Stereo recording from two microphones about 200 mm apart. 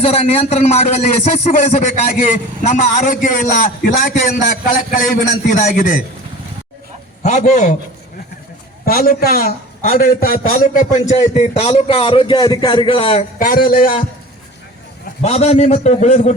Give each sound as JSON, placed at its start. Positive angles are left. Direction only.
{"t": 0.0, "sound": "a man's voice", "side_deg": 30}
{"t": 7.3, "sound": "a man's voice", "side_deg": 35}
{"t": 8.8, "sound": "a man's voice", "side_deg": 45}
{"t": 11.3, "sound": "a man's voice", "side_deg": 30}
{"t": 13.4, "sound": "a man's voice", "side_deg": 45}
{"t": 15.2, "sound": "a man's voice", "side_deg": 30}